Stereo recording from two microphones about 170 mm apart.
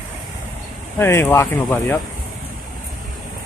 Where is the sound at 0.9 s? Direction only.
15° left (ahead or behind).